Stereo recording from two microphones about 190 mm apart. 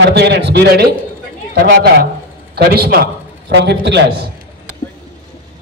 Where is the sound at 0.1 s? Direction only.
60° right (ahead or behind).